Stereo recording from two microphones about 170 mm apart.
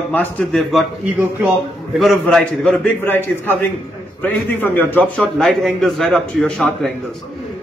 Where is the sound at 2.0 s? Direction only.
Centre (ahead or behind).